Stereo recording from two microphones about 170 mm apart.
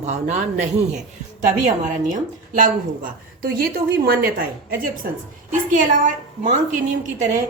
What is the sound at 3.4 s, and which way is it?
Speech, 60° right (ahead or behind).